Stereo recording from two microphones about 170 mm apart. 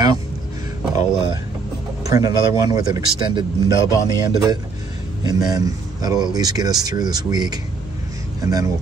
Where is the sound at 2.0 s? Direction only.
20° right (ahead or behind).